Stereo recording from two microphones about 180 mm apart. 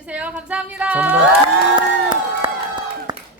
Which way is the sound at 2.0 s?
25° right (ahead or behind).